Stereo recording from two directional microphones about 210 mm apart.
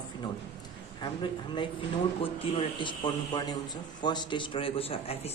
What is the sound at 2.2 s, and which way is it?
A man's voice, 25° left (ahead or behind).